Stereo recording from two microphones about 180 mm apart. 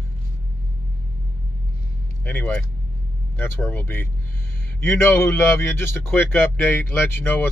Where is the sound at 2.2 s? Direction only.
10° left (ahead or behind).